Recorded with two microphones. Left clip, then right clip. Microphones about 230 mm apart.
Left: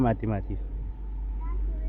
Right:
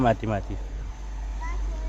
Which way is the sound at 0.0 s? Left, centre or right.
Centre.